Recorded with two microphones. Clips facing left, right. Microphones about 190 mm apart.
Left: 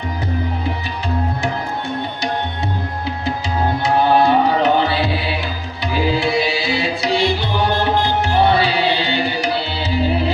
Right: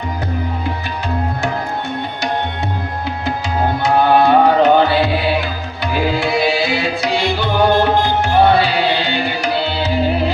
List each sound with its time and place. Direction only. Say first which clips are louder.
3.8 s music: right 2 dB; 50° right (ahead or behind)
9.4 s tabla: right 3 dB; 50° right (ahead or behind)